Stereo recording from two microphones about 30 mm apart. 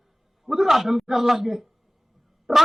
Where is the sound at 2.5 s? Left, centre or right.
Centre.